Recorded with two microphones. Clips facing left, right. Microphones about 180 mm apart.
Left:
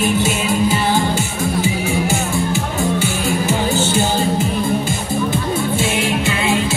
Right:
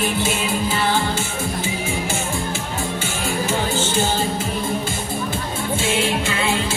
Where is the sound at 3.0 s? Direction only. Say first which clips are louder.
Left 5 dB; 40° left (ahead or behind).